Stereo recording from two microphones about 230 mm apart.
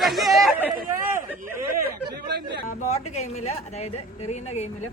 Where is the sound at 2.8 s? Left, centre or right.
Left.